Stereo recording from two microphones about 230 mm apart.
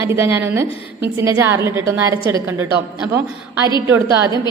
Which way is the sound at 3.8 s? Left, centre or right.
Centre.